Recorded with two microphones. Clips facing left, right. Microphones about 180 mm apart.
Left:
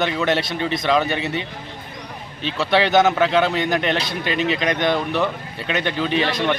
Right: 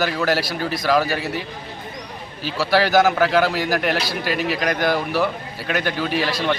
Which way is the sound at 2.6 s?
5° right (ahead or behind).